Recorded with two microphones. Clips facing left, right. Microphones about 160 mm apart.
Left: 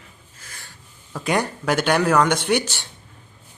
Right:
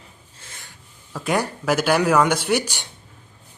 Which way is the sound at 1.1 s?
Centre (ahead or behind).